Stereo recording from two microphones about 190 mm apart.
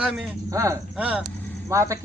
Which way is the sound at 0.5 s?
15° right (ahead or behind).